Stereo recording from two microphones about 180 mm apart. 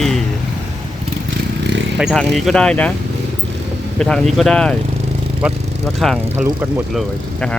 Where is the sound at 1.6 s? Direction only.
75° right (ahead or behind).